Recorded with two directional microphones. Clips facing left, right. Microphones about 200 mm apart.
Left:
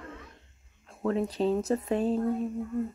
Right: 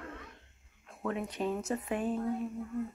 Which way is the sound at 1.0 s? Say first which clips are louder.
Left 7 dB; 35° left (ahead or behind).